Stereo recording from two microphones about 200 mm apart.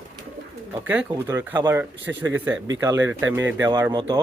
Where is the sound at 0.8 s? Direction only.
5° right (ahead or behind).